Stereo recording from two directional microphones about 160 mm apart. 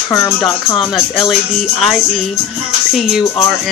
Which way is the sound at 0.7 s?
Centre (ahead or behind).